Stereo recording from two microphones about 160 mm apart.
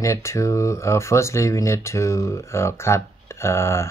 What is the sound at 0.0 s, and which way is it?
Speech, 20° left (ahead or behind).